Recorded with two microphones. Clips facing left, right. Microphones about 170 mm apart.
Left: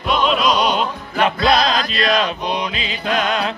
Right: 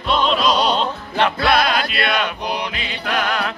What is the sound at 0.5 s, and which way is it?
Music, 30° right (ahead or behind).